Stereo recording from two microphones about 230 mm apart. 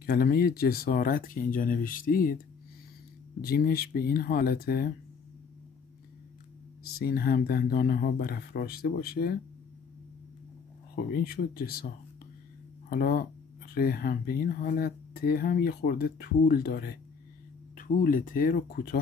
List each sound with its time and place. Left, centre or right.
0.0 s speech: left
7.0 s speech: left
11.1 s speech: left
12.9 s speech: left